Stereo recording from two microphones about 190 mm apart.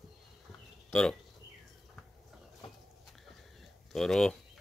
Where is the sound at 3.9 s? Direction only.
Centre (ahead or behind).